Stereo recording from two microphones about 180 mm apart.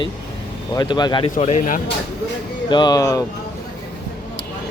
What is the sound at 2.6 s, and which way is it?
Speech, 25° left (ahead or behind).